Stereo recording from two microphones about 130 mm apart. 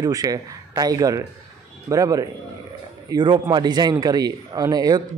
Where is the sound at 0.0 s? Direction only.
30° right (ahead or behind).